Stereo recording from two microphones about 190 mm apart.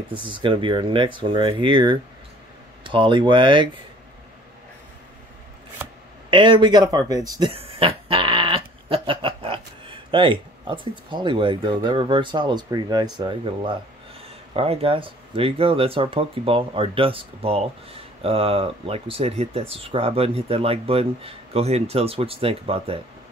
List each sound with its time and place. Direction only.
0.1 s speech: 25° right (ahead or behind)
6.3 s speech: 25° right (ahead or behind)